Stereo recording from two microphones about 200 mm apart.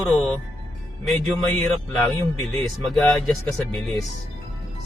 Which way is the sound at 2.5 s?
Centre (ahead or behind).